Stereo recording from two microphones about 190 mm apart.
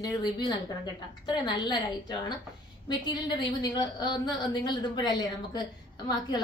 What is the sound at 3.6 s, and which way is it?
A woman's voice, 20° left (ahead or behind).